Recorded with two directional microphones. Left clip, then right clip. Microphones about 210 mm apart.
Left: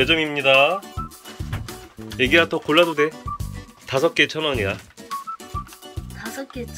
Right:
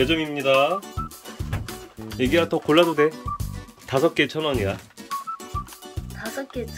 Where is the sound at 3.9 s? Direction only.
15° right (ahead or behind).